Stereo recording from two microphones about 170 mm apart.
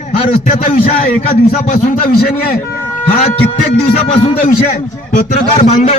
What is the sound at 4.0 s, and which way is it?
Speech, 40° left (ahead or behind).